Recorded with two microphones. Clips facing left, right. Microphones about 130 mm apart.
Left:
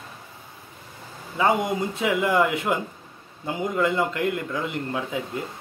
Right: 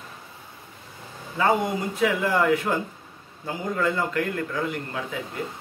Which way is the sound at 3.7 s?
20° left (ahead or behind).